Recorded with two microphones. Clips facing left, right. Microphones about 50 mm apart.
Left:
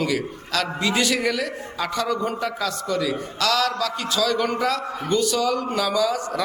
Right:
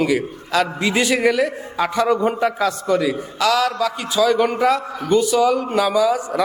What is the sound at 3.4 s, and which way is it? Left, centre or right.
A man's voice, centre.